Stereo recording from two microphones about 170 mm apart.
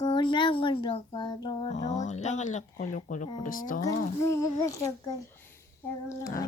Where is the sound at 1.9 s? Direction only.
45° left (ahead or behind).